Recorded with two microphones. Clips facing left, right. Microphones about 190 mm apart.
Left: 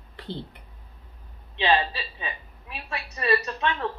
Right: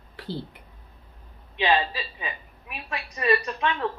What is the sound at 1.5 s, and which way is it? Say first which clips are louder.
A woman's voice: even; 15° right (ahead or behind).